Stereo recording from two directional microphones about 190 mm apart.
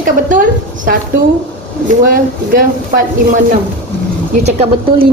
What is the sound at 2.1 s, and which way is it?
Speech, 45° right (ahead or behind).